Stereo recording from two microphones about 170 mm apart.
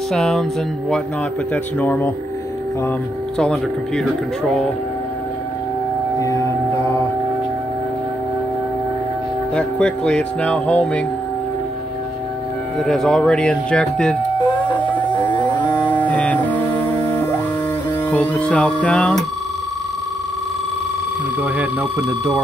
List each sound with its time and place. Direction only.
0.1 s speech: centre (ahead or behind)
1.5 s music: 10° left (ahead or behind)
3.3 s speech: 5° left (ahead or behind)
6.1 s music: 20° left (ahead or behind)
9.6 s music: 5° left (ahead or behind)
12.8 s speech: centre (ahead or behind)
14.9 s a sound: 10° left (ahead or behind)
15.8 s music: 10° left (ahead or behind)
18.1 s music: 10° left (ahead or behind)